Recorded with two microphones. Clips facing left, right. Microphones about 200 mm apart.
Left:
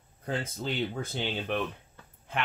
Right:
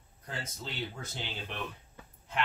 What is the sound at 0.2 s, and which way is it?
Speech, 55° left (ahead or behind).